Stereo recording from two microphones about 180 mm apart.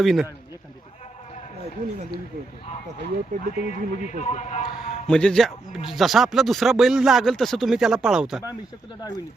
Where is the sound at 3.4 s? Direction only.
40° left (ahead or behind).